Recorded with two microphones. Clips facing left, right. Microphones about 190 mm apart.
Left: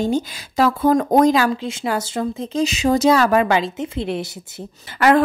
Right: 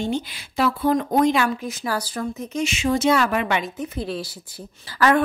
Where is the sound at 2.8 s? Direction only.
40° left (ahead or behind).